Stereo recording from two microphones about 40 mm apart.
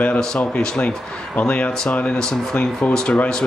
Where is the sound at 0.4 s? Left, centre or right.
Left.